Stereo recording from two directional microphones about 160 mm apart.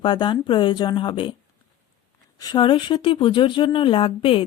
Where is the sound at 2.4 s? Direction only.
25° left (ahead or behind).